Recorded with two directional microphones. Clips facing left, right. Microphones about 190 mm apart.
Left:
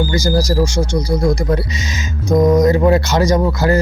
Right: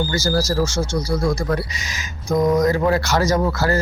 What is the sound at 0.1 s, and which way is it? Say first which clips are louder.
Speech: left 4 dB; 15° left (ahead or behind).